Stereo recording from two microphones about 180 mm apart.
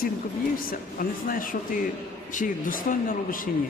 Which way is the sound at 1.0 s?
50° left (ahead or behind).